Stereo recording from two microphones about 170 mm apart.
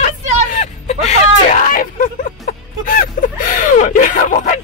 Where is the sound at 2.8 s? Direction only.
55° left (ahead or behind).